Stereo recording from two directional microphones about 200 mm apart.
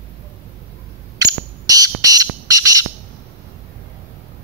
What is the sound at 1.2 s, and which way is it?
Fire alarm, 20° right (ahead or behind).